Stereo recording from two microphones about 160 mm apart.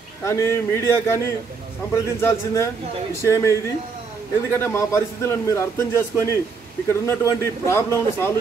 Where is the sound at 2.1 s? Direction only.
15° left (ahead or behind).